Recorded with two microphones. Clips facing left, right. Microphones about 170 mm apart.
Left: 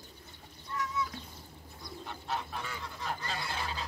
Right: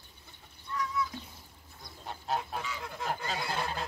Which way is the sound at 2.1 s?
45° right (ahead or behind).